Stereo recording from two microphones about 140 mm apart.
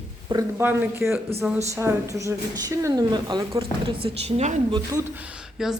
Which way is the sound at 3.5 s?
40° right (ahead or behind).